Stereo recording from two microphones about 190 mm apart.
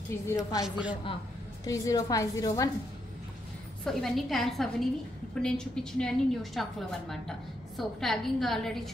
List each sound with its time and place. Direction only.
0.4 s a woman's voice: 5° right (ahead or behind)
1.7 s a woman's voice: 20° left (ahead or behind)
3.8 s a woman's voice: centre (ahead or behind)